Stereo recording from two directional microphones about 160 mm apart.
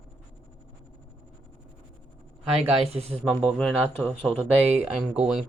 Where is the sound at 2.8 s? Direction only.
40° right (ahead or behind).